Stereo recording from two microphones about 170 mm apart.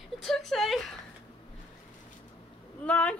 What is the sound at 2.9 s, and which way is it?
Speech, 5° left (ahead or behind).